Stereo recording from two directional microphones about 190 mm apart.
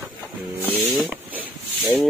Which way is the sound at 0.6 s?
10° right (ahead or behind).